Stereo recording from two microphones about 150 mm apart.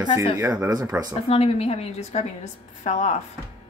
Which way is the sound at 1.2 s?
40° left (ahead or behind).